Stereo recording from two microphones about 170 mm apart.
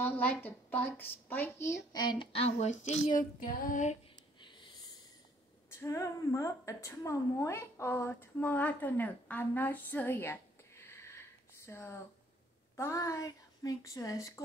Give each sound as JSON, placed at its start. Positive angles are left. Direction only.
{"t": 0.0, "sound": "a woman's voice", "side_deg": 10}
{"t": 4.4, "sound": "a sound", "side_deg": 30}
{"t": 5.7, "sound": "a woman's voice", "side_deg": 15}